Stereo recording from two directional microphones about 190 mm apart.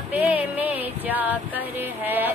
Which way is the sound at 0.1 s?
10° right (ahead or behind).